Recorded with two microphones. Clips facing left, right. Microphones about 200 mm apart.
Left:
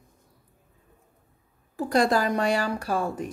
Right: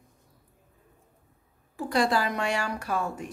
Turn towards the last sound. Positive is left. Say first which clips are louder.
# left 3 dB
turn(degrees=35)  # may be behind; listen again after turning